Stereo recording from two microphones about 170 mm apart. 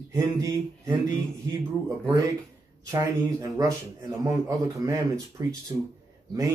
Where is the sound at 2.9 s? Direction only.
20° right (ahead or behind).